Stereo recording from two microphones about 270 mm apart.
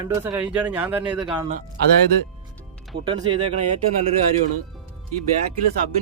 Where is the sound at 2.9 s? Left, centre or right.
Centre.